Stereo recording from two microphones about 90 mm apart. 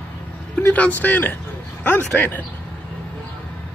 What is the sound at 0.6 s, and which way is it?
Speech, 20° left (ahead or behind).